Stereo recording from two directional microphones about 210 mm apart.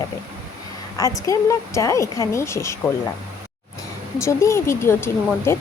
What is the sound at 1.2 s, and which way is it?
Speech, 15° left (ahead or behind).